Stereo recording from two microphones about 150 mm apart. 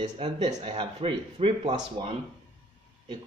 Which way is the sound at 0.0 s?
30° right (ahead or behind).